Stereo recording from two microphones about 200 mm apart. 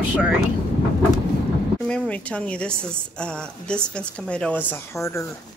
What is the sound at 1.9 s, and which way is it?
A woman's voice, 5° left (ahead or behind).